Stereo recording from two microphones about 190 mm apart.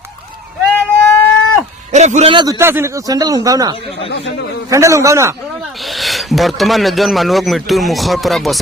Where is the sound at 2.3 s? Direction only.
20° right (ahead or behind).